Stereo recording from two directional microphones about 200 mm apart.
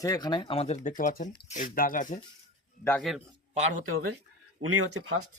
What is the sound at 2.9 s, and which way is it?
Speech, centre (ahead or behind).